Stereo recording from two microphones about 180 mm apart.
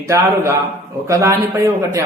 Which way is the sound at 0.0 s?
15° right (ahead or behind).